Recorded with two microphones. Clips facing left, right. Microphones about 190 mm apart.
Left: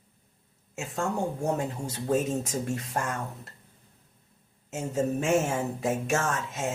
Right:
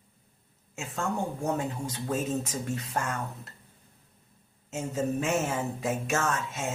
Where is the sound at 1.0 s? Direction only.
45° left (ahead or behind).